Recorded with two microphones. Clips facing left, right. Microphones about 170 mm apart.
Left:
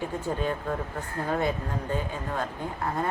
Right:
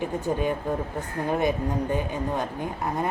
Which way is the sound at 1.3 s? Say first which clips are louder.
Right 4 dB; 15° right (ahead or behind).